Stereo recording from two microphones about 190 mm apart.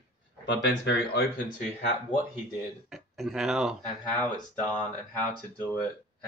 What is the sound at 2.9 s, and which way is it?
Speech, centre (ahead or behind).